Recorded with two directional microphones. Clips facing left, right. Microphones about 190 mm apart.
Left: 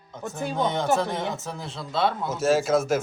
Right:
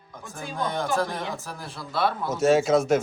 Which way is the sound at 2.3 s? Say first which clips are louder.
Right 3 dB; centre (ahead or behind).